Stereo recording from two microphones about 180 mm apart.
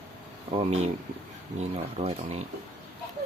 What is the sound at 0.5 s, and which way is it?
Speech, 35° right (ahead or behind).